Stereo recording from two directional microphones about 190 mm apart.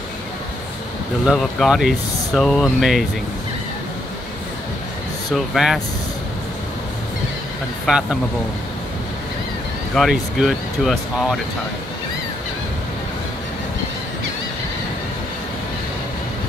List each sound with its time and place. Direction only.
1.2 s speech: centre (ahead or behind)
5.3 s speech: centre (ahead or behind)
7.8 s speech: 5° right (ahead or behind)
9.9 s speech: centre (ahead or behind)